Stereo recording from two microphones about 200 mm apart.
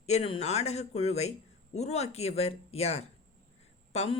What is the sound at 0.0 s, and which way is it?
A woman's voice, 30° left (ahead or behind).